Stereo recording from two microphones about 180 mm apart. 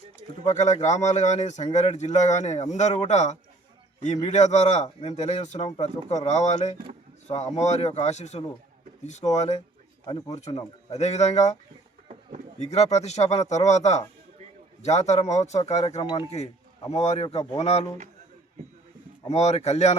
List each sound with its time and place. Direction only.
0.4 s speech: 40° left (ahead or behind)
12.5 s speech: 40° left (ahead or behind)
16.0 s cowbell: 25° left (ahead or behind)
16.9 s speech: 35° left (ahead or behind)
19.3 s speech: 35° left (ahead or behind)